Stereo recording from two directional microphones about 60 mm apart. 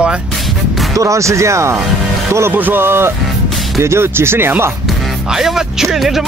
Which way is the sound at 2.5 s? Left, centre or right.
Right.